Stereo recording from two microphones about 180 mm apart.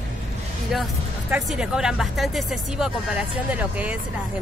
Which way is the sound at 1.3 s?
5° right (ahead or behind).